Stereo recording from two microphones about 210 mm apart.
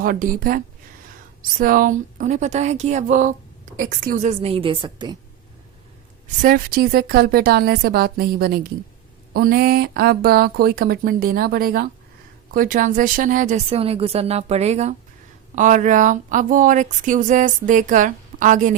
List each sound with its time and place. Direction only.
0.0 s a woman's voice: 40° right (ahead or behind); by 5.1 s 20° right (ahead or behind)
6.4 s speech: 45° right (ahead or behind)